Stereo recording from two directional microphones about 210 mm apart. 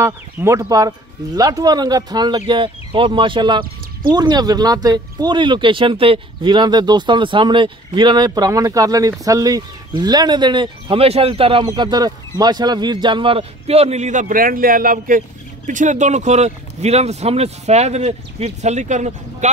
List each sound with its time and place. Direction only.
0.0 s speech: 15° right (ahead or behind); by 19.5 s 35° right (ahead or behind)